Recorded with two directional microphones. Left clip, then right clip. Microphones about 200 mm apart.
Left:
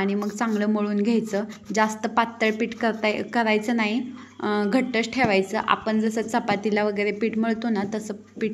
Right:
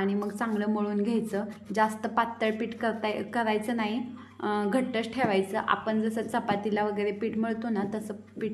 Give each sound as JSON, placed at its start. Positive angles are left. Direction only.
{"t": 0.0, "sound": "a woman's voice", "side_deg": 15}